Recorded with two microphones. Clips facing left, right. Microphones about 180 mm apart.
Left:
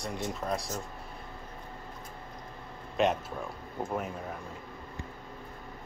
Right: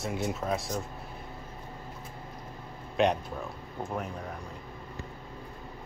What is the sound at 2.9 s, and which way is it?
Speech, centre (ahead or behind).